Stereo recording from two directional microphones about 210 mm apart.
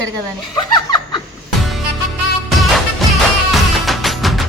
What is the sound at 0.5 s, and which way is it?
Chuckle, 20° left (ahead or behind).